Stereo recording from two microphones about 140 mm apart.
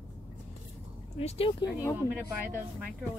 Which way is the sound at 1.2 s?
45° left (ahead or behind).